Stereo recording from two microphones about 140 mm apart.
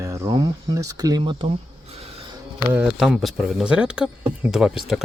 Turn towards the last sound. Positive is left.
turn(degrees=0)  # may be behind; listen again after turning